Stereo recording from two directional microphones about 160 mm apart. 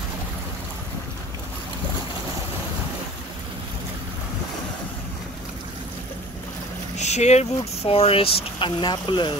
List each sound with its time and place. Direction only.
7.0 s speech: 45° left (ahead or behind); by 9.3 s 30° left (ahead or behind)